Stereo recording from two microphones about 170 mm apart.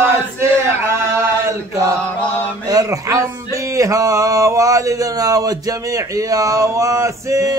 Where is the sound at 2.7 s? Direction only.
20° right (ahead or behind).